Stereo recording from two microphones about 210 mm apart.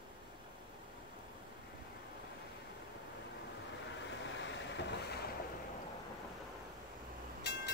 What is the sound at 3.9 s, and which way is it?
Vehicle, 60° left (ahead or behind).